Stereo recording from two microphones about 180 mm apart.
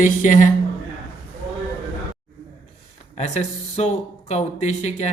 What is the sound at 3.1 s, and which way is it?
Speech, 40° left (ahead or behind).